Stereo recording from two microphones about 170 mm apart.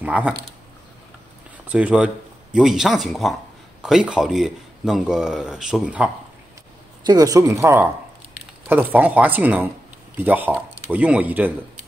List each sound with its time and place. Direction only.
0.0 s speech: 5° right (ahead or behind)
1.7 s speech: 5° right (ahead or behind)
7.1 s speech: 20° right (ahead or behind)